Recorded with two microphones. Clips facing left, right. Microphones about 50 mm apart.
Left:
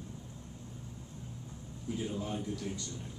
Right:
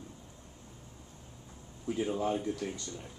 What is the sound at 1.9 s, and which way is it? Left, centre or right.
Speech, right.